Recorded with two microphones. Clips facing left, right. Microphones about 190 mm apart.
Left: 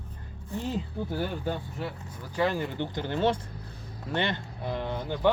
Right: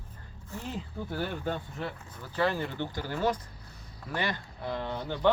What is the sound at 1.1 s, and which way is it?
Speech, 10° left (ahead or behind).